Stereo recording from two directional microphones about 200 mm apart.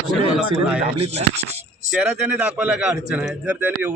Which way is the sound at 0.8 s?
30° right (ahead or behind).